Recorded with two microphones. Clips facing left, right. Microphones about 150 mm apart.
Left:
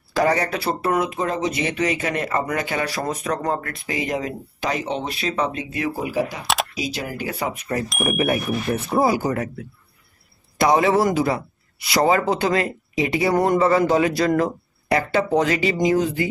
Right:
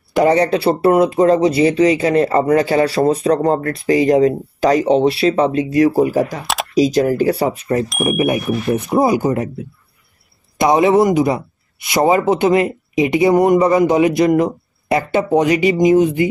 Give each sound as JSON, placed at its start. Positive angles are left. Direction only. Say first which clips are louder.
{"t": 0.1, "sound": "speech", "louder": "right 7 dB", "side_deg": -25}
{"t": 6.4, "sound": "camera", "louder": "right 1 dB", "side_deg": 0}
{"t": 6.7, "sound": "speech", "louder": "right 15 dB", "side_deg": -40}
{"t": 8.1, "sound": "a man's voice", "louder": "right 4 dB", "side_deg": -15}
{"t": 10.6, "sound": "a man's voice", "louder": "right 5 dB", "side_deg": -20}